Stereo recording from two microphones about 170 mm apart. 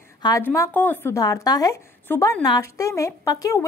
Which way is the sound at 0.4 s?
10° left (ahead or behind).